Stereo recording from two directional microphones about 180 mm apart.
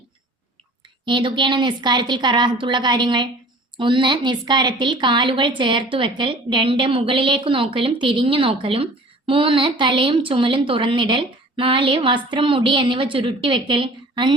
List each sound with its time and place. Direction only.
1.0 s a woman's voice: 25° right (ahead or behind)